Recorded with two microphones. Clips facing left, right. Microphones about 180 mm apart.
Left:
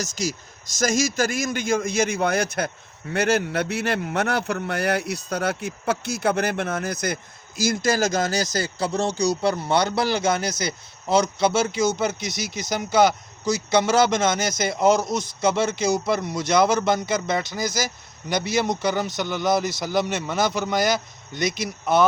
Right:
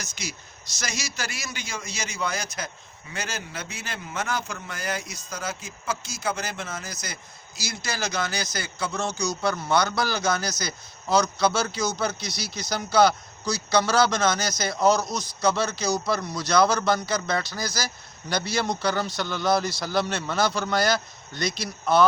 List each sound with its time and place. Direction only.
0.0 s a man's voice: 45° left (ahead or behind); by 22.0 s 20° left (ahead or behind)